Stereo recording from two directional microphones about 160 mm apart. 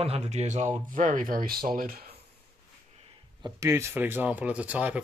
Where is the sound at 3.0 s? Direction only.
30° right (ahead or behind).